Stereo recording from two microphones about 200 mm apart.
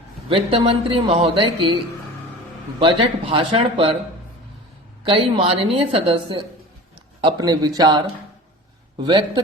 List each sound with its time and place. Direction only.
0.3 s a man's voice: 30° right (ahead or behind)
5.0 s a man's voice: 30° right (ahead or behind)